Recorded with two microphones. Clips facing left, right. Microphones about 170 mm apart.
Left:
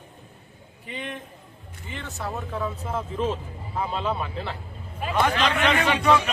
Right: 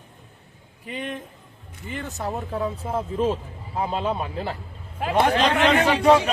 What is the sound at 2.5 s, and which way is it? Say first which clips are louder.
A man's voice: right 3 dB; 35° right (ahead or behind).